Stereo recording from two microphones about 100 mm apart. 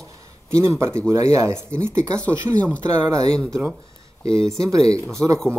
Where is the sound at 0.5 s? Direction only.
30° right (ahead or behind).